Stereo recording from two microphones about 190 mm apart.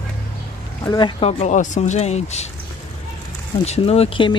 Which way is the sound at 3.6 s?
35° left (ahead or behind).